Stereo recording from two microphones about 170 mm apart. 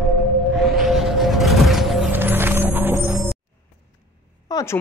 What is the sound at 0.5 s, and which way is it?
Music, centre (ahead or behind).